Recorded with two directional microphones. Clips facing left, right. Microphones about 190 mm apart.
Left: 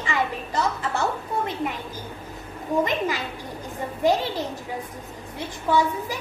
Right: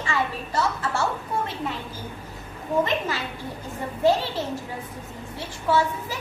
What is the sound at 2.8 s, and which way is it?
A child's voice, 15° left (ahead or behind).